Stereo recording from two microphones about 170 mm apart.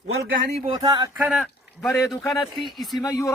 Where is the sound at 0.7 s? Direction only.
25° right (ahead or behind).